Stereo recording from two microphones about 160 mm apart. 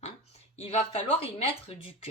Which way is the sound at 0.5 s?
40° left (ahead or behind).